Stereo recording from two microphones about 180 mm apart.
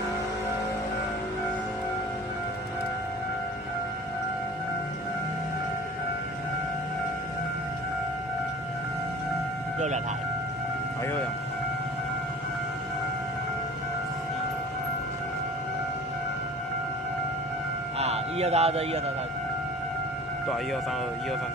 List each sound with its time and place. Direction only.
17.9 s music: 35° right (ahead or behind)